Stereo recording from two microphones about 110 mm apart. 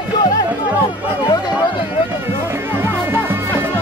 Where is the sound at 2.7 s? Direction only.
20° right (ahead or behind).